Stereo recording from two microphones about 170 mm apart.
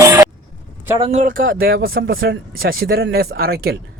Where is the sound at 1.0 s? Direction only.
45° right (ahead or behind).